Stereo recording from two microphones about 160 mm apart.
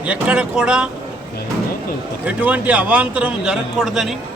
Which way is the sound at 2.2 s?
10° right (ahead or behind).